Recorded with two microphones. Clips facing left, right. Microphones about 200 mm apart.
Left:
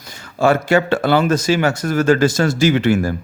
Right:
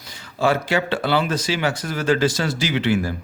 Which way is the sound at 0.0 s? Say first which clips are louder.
Left 4 dB; 45° left (ahead or behind).